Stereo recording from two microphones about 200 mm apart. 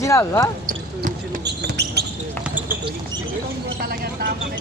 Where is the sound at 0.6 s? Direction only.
40° right (ahead or behind).